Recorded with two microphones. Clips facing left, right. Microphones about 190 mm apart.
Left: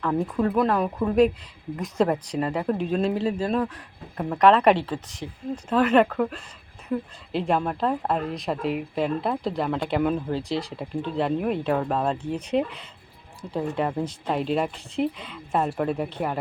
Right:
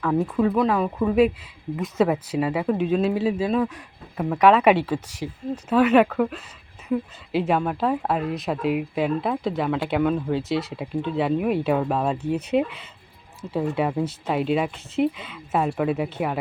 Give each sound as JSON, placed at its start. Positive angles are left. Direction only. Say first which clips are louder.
{"t": 0.0, "sound": "speech", "louder": "right 3 dB", "side_deg": 0}